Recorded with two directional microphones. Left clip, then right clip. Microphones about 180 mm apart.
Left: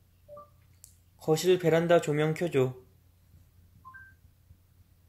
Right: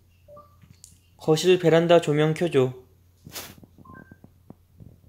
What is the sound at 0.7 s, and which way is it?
Speech, 20° right (ahead or behind).